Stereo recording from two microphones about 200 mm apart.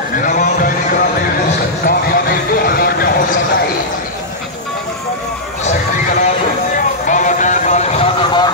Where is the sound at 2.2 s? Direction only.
50° left (ahead or behind).